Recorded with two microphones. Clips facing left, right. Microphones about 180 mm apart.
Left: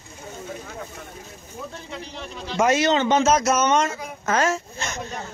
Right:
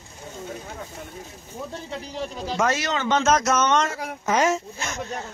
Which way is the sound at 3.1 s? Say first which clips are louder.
Left 2 dB; 5° left (ahead or behind).